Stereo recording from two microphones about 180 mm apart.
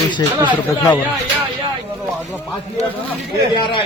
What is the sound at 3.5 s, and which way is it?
Speech, 25° left (ahead or behind).